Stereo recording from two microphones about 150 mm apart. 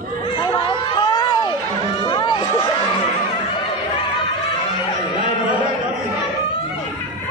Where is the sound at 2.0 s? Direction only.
30° left (ahead or behind).